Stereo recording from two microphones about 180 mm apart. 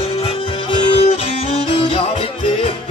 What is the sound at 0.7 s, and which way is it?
Music, 35° left (ahead or behind).